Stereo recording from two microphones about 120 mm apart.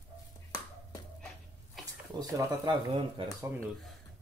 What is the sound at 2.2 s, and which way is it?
Speech, 30° right (ahead or behind).